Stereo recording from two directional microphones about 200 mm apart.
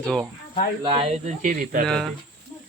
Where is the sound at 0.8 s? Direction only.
25° right (ahead or behind); by 1.8 s 45° right (ahead or behind).